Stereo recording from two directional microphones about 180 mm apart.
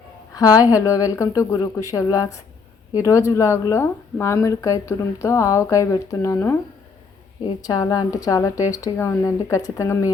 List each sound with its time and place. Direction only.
0.3 s speech: 20° left (ahead or behind)
7.6 s a woman's voice: 20° left (ahead or behind)